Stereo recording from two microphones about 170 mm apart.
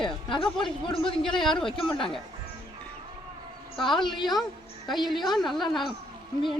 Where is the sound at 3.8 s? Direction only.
Centre (ahead or behind).